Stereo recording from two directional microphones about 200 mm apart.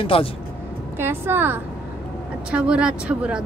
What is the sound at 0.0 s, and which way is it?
Speech, 30° left (ahead or behind).